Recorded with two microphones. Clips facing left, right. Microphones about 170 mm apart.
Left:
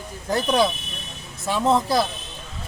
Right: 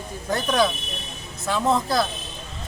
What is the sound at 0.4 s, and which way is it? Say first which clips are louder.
Speech: even; 20° left (ahead or behind).